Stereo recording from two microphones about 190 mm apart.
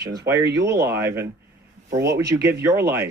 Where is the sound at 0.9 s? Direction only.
15° right (ahead or behind).